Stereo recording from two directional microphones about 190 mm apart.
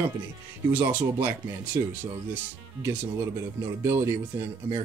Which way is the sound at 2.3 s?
10° right (ahead or behind).